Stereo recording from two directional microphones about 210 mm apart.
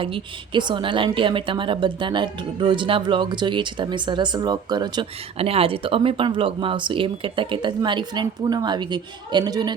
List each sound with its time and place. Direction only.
0.0 s a woman's voice: 25° right (ahead or behind)